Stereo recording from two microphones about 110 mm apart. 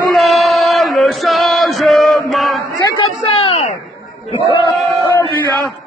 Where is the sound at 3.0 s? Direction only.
60° left (ahead or behind).